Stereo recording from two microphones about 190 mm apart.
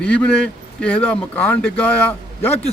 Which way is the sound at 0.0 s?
5° left (ahead or behind).